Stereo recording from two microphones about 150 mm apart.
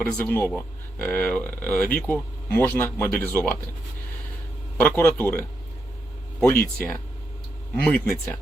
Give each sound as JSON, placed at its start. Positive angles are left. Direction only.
{"t": 0.0, "sound": "speech", "side_deg": 15}
{"t": 4.8, "sound": "speech", "side_deg": 10}